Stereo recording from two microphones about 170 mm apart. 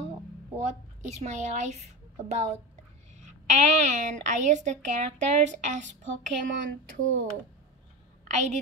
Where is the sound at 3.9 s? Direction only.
45° right (ahead or behind).